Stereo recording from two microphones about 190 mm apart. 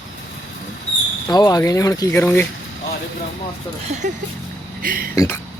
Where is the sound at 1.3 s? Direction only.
20° left (ahead or behind).